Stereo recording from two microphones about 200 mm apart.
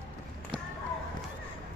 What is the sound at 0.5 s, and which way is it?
Basketball bounce, 25° right (ahead or behind).